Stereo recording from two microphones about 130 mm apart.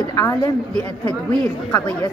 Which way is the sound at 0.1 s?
20° left (ahead or behind).